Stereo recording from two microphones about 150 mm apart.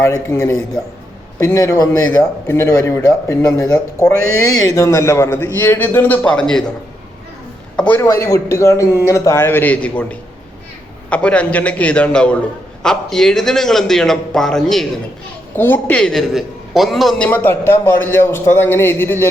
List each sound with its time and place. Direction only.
0.0 s a man's voice: 20° left (ahead or behind)
7.8 s a man's voice: 15° left (ahead or behind)
15.5 s a man's voice: 15° left (ahead or behind)
17.2 s a man's voice: 10° left (ahead or behind)